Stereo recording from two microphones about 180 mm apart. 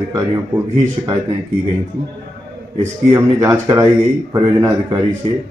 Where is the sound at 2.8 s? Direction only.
15° right (ahead or behind).